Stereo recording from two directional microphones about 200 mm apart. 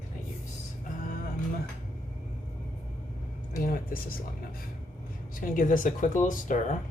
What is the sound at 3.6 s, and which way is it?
Speech, 45° left (ahead or behind).